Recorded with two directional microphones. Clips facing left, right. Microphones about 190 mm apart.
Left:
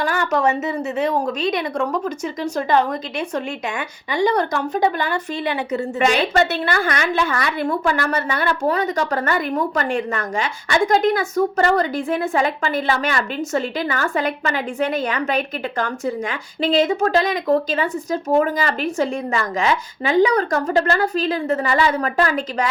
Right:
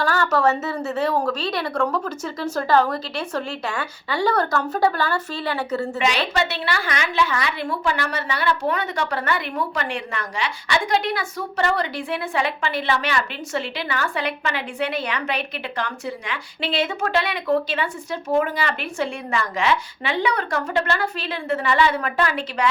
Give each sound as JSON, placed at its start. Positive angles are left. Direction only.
{"t": 0.0, "sound": "a woman's voice", "side_deg": 15}
{"t": 6.0, "sound": "a woman's voice", "side_deg": 50}